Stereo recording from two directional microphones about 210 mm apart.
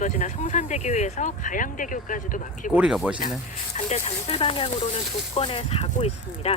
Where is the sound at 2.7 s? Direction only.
5° right (ahead or behind).